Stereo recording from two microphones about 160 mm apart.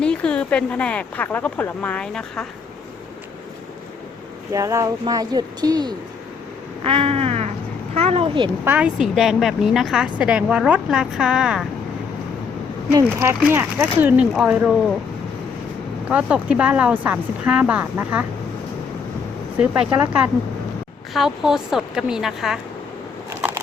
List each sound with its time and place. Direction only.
0.0 s speech: 5° left (ahead or behind)
4.5 s speech: 20° right (ahead or behind)
6.8 s a sound: 35° right (ahead or behind)
7.9 s speech: 40° right (ahead or behind)
8.6 s speech: 10° right (ahead or behind)
12.9 s speech: 20° right (ahead or behind)
16.0 s speech: 10° right (ahead or behind)
19.5 s speech: 5° right (ahead or behind)
21.1 s a woman's voice: centre (ahead or behind)
23.3 s a sound: 15° right (ahead or behind)